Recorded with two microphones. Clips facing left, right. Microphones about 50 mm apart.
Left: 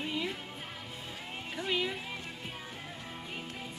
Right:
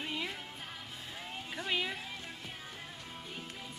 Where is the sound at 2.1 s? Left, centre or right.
Left.